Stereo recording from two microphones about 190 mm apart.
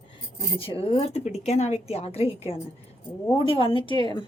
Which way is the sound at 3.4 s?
30° left (ahead or behind).